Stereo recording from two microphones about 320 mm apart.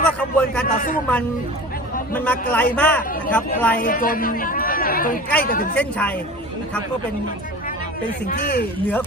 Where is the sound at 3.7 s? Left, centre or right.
Left.